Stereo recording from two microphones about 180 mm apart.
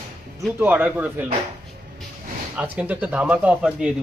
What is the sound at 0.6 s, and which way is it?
Speech, 10° right (ahead or behind).